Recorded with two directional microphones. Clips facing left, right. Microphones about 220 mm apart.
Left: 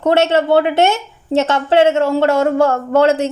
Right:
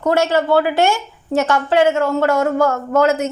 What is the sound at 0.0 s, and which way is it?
A woman's voice, 25° left (ahead or behind).